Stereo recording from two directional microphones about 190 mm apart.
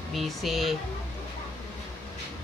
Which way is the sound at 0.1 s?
Centre (ahead or behind).